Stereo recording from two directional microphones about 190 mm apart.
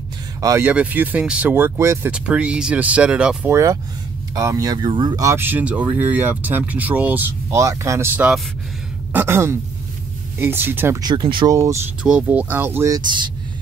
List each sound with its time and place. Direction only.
0.4 s speech: 15° right (ahead or behind)
12.0 s speech: 5° right (ahead or behind); by 13.3 s 25° right (ahead or behind)